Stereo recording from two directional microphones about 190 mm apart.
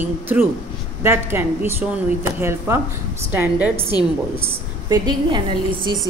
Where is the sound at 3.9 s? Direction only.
20° left (ahead or behind).